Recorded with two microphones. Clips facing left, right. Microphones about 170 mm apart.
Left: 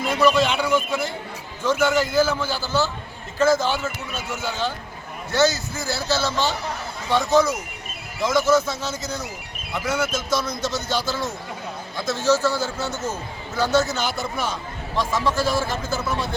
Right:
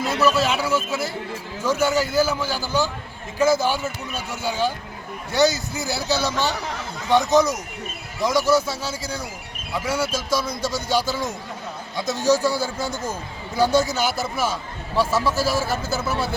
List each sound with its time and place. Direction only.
0.1 s a man's voice: 5° right (ahead or behind)